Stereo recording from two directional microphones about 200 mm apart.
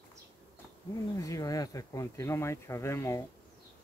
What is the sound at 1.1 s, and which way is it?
Speech, 15° left (ahead or behind).